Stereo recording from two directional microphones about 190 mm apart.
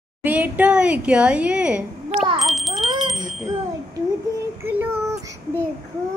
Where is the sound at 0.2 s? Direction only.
10° right (ahead or behind).